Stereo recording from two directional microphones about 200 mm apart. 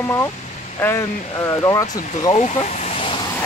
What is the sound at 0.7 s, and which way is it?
Speech, 15° left (ahead or behind).